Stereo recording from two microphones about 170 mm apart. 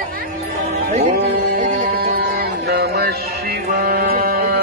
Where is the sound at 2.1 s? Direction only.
70° right (ahead or behind).